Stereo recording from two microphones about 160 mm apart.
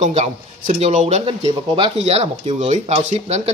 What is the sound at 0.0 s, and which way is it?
Speech, 50° right (ahead or behind).